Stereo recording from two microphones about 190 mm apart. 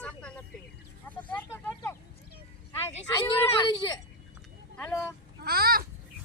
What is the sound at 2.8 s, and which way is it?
Speech, 20° left (ahead or behind).